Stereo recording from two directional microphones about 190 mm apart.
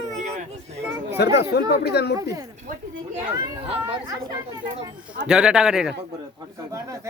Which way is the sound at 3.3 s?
25° right (ahead or behind).